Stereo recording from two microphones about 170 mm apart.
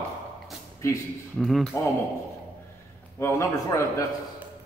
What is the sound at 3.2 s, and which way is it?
Speech, 15° left (ahead or behind).